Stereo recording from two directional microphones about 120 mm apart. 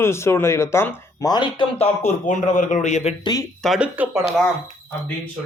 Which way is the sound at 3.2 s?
35° left (ahead or behind).